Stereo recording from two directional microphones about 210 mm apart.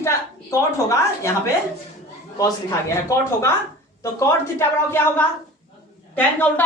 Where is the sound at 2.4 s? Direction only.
15° left (ahead or behind).